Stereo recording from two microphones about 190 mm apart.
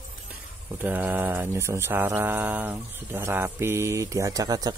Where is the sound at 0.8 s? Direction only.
10° right (ahead or behind).